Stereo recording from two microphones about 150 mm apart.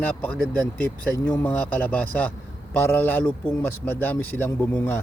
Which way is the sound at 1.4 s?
10° left (ahead or behind).